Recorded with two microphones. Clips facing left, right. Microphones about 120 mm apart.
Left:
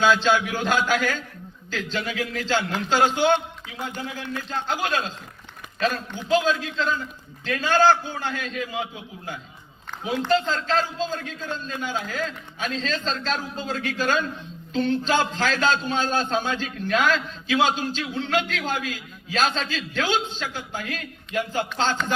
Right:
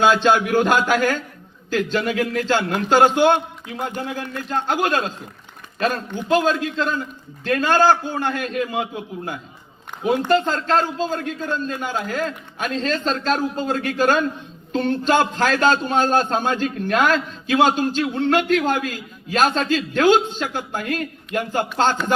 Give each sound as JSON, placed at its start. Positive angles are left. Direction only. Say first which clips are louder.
{"t": 0.0, "sound": "a man's voice", "louder": "right 4 dB", "side_deg": -50}
{"t": 6.2, "sound": "a man's voice", "louder": "right 3 dB", "side_deg": -45}